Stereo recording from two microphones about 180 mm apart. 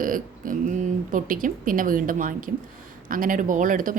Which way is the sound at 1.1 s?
50° right (ahead or behind).